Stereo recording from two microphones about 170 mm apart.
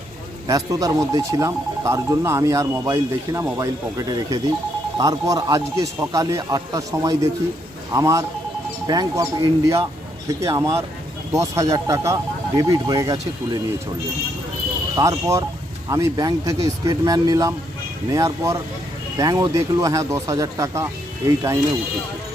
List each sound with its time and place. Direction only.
0.4 s speech: 20° right (ahead or behind)
14.9 s speech: 15° right (ahead or behind)